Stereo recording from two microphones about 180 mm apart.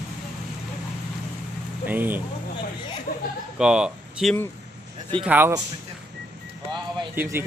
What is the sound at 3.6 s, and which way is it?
Speech, 5° right (ahead or behind).